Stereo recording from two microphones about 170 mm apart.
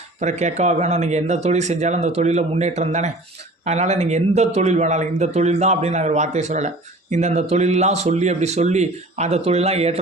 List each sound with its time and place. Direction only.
0.2 s speech: 45° right (ahead or behind)